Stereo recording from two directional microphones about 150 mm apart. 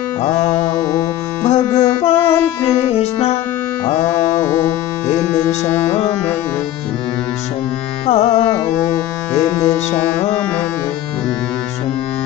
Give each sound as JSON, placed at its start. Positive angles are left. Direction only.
{"t": 1.5, "sound": "carnatic music", "side_deg": 45}
{"t": 2.1, "sound": "music", "side_deg": 15}
{"t": 2.9, "sound": "music", "side_deg": 45}
{"t": 4.2, "sound": "music", "side_deg": 15}
{"t": 8.1, "sound": "music", "side_deg": 45}